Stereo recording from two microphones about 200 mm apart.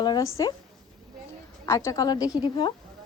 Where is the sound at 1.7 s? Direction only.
15° left (ahead or behind).